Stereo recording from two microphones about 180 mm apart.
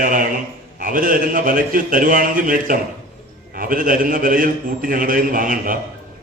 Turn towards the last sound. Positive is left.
turn(degrees=-50)  # may be behind; listen again after turning